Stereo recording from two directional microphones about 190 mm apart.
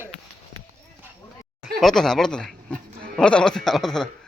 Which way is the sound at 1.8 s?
Centre (ahead or behind).